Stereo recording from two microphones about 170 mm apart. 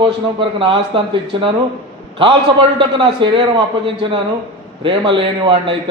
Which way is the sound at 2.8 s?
30° right (ahead or behind).